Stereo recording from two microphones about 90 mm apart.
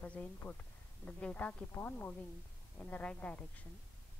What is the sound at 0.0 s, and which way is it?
A woman's voice, 15° left (ahead or behind).